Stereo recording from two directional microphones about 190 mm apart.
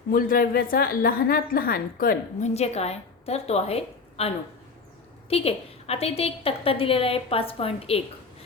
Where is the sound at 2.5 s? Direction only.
35° left (ahead or behind).